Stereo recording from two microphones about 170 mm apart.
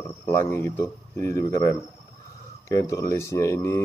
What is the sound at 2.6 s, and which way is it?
Speech, 20° left (ahead or behind).